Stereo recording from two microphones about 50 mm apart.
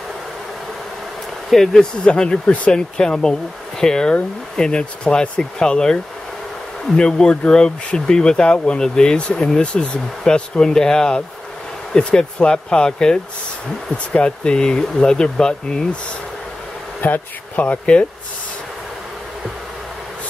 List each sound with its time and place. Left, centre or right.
1.5 s speech: centre
7.0 s speech: centre
17.0 s speech: left